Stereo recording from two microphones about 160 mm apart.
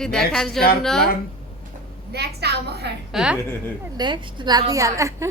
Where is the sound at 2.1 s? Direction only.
90° right.